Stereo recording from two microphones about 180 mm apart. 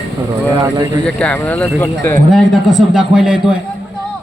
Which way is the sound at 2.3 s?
Centre (ahead or behind).